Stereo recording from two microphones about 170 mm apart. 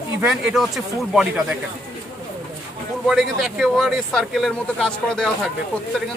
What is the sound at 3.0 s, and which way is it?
Speech, centre (ahead or behind).